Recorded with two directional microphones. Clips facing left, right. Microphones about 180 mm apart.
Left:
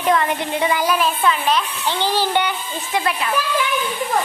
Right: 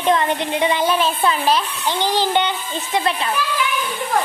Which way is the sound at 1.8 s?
15° right (ahead or behind).